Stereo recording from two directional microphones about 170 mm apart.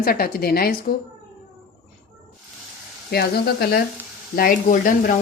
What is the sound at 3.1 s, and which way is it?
Speech, 65° left (ahead or behind).